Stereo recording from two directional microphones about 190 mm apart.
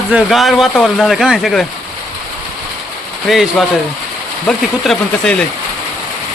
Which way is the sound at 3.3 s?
Centre (ahead or behind).